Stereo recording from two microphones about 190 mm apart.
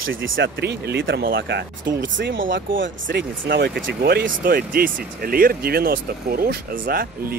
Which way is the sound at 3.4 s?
55° right (ahead or behind).